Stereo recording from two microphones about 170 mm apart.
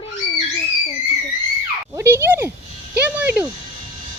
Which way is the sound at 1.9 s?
15° right (ahead or behind).